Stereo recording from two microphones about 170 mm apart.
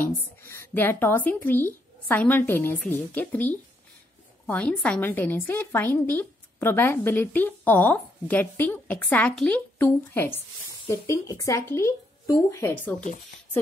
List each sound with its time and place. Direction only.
0.0 s a woman's voice: 15° left (ahead or behind)